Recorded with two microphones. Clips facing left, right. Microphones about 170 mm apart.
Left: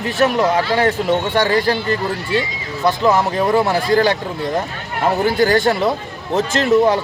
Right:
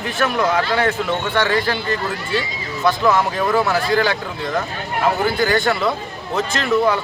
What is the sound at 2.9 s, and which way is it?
A man's voice, 35° left (ahead or behind).